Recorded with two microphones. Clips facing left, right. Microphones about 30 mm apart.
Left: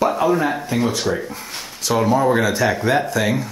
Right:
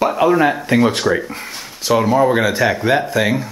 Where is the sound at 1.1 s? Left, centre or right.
Right.